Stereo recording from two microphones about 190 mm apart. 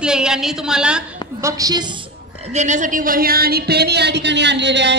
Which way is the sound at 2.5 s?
40° right (ahead or behind).